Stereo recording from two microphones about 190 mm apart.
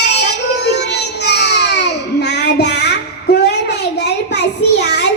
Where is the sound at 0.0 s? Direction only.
65° left (ahead or behind).